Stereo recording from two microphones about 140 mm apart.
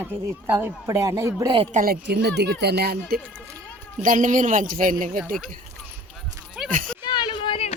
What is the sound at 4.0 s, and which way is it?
A woman's voice, 70° right (ahead or behind).